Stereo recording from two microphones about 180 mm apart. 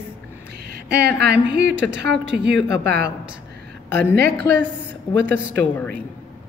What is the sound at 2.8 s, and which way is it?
Speech, 65° right (ahead or behind).